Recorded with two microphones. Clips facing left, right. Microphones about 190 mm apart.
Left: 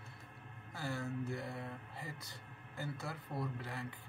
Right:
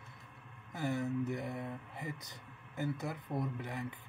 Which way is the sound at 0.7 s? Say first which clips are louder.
Right 6 dB; 20° right (ahead or behind).